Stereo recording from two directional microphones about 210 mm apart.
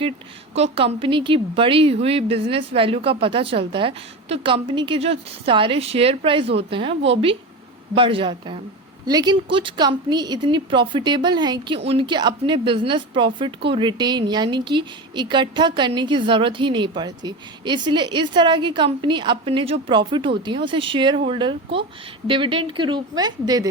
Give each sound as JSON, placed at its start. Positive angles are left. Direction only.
{"t": 0.5, "sound": "a woman's voice", "side_deg": -30}